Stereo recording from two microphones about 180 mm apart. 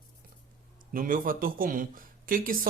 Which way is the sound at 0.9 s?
50° right (ahead or behind).